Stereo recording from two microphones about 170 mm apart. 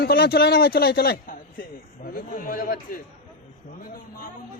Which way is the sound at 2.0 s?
55° left (ahead or behind).